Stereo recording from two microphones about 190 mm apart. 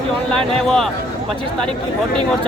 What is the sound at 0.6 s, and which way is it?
Speech, centre (ahead or behind).